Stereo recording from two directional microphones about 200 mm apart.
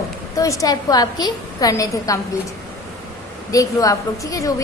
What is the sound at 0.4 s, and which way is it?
A woman's voice, 15° left (ahead or behind).